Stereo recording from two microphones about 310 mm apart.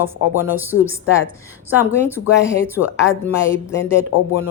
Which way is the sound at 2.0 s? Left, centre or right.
Centre.